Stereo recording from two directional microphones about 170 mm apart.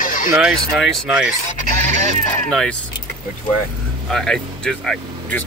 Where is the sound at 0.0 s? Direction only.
50° left (ahead or behind).